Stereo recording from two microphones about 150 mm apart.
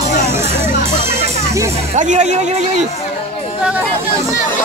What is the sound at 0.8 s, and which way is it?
Music, 45° right (ahead or behind).